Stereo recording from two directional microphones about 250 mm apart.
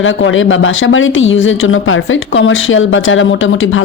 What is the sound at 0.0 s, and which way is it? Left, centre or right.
Speech, left.